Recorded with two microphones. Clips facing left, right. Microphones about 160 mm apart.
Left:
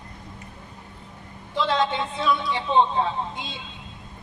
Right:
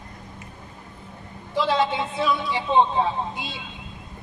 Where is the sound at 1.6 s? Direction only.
10° right (ahead or behind).